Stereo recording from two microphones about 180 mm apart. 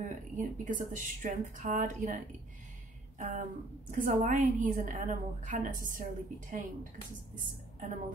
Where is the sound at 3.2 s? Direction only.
45° right (ahead or behind).